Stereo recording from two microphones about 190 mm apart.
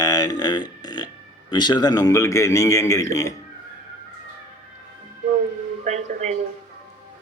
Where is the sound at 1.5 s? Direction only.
20° left (ahead or behind).